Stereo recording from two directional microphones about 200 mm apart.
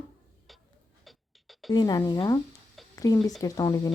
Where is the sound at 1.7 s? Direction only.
20° left (ahead or behind).